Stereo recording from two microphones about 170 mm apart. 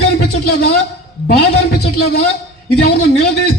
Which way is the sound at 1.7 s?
75° left (ahead or behind).